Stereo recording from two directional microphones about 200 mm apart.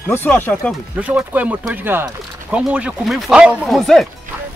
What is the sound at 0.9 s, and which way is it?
Speech, 10° right (ahead or behind).